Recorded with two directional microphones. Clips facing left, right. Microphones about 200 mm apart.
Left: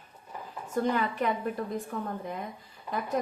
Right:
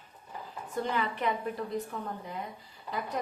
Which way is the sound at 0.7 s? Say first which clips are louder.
Left 4 dB; 45° left (ahead or behind).